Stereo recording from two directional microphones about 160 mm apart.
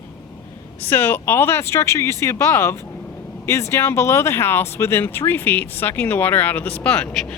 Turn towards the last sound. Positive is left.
turn(degrees=5)  # may be behind; listen again after turning